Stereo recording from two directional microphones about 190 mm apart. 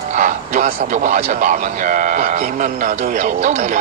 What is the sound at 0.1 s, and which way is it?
Speech, 40° right (ahead or behind).